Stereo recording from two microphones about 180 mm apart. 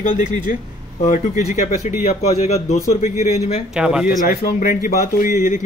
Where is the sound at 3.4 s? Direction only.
40° left (ahead or behind).